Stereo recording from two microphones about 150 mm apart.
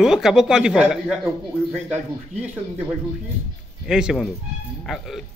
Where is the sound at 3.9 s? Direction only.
5° right (ahead or behind).